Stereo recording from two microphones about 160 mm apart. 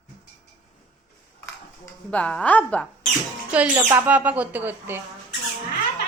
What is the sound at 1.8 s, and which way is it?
Speech, 10° left (ahead or behind).